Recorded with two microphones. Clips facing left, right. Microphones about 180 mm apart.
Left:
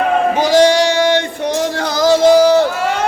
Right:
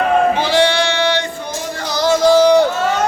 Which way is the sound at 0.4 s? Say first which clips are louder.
Left 4 dB; 40° left (ahead or behind).